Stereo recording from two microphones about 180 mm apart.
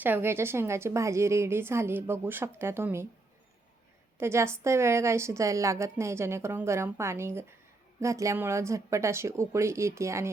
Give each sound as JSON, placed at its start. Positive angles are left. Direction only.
{"t": 0.0, "sound": "a woman's voice", "side_deg": -10}
{"t": 4.2, "sound": "a woman's voice", "side_deg": -15}